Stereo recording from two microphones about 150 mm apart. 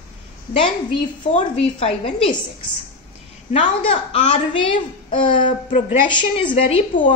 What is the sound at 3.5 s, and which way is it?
A woman's voice, 45° left (ahead or behind).